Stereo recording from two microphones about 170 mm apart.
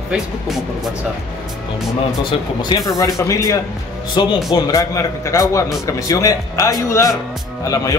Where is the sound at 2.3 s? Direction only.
25° left (ahead or behind).